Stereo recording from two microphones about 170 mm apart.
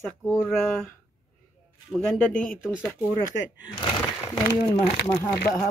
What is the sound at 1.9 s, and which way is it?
Speech, 5° left (ahead or behind).